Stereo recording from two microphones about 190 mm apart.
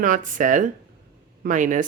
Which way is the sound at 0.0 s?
45° right (ahead or behind).